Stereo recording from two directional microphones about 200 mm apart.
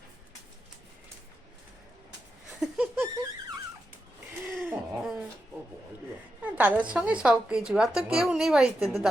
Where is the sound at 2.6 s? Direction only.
5° right (ahead or behind).